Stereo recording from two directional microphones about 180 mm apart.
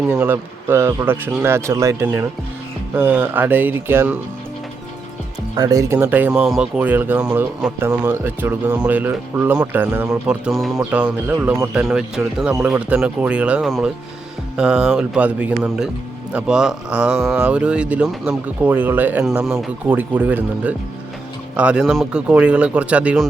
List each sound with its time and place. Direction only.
0.0 s speech: 10° right (ahead or behind)
5.5 s speech: 20° right (ahead or behind)